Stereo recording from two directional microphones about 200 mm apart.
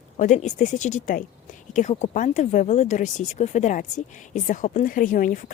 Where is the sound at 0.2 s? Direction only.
35° left (ahead or behind).